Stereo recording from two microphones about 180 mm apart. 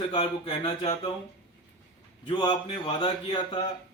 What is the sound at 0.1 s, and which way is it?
Speech, 30° left (ahead or behind).